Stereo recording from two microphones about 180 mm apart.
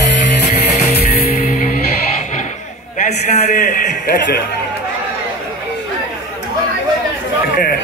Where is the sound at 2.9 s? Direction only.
40° left (ahead or behind).